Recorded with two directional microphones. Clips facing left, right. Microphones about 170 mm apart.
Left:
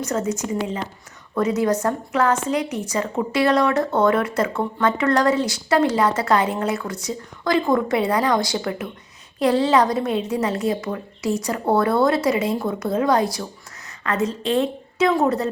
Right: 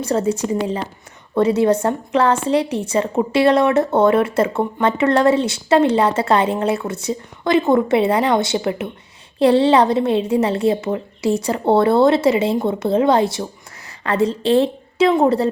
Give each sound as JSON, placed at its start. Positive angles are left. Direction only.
{"t": 0.0, "sound": "a woman's voice", "side_deg": -30}